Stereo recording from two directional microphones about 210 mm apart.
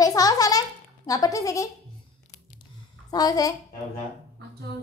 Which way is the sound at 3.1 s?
20° left (ahead or behind).